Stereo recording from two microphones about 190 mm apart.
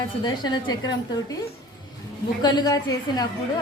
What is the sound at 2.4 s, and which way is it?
Speech, 20° left (ahead or behind).